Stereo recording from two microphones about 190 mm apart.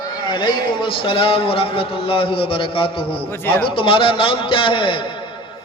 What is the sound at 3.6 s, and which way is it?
A man's voice, 25° left (ahead or behind).